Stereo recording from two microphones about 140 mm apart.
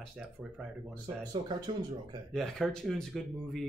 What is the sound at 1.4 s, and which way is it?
Speech, 35° right (ahead or behind).